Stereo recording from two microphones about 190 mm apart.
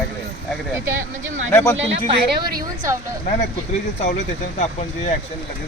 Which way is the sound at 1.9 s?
30° right (ahead or behind).